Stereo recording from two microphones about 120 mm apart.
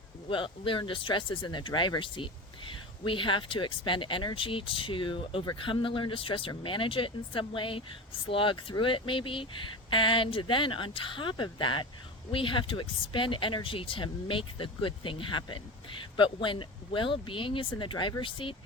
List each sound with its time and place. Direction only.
0.3 s speech: 45° left (ahead or behind)